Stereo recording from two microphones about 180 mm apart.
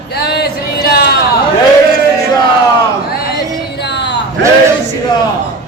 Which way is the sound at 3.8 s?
70° left (ahead or behind).